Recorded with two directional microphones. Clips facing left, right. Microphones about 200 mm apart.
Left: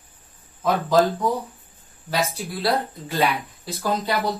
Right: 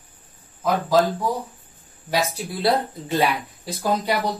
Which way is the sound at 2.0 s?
15° right (ahead or behind).